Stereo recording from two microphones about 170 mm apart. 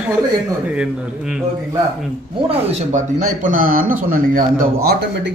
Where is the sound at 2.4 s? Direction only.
40° right (ahead or behind); by 4.7 s 55° right (ahead or behind).